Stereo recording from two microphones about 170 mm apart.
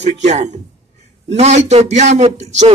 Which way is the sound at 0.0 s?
40° right (ahead or behind).